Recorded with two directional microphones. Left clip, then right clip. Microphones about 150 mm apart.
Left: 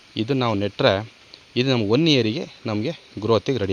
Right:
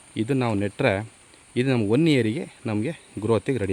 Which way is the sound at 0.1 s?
10° right (ahead or behind).